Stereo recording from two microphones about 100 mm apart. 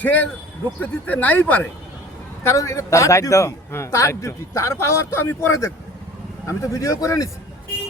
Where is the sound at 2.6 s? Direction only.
30° left (ahead or behind).